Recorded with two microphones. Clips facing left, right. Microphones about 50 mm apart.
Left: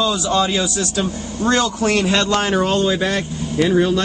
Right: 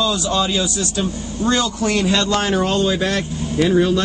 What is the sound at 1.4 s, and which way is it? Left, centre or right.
Speech, left.